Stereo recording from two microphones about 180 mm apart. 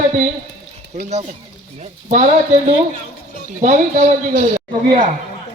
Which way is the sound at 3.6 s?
40° right (ahead or behind).